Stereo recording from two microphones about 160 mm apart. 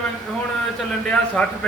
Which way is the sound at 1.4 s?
5° left (ahead or behind).